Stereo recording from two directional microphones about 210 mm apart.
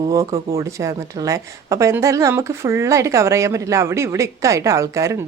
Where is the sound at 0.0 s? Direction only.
15° right (ahead or behind).